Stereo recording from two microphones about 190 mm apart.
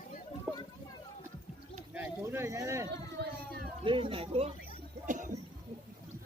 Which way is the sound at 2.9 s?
60° right (ahead or behind).